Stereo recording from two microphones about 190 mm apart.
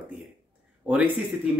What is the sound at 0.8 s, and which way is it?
Speech, 5° right (ahead or behind).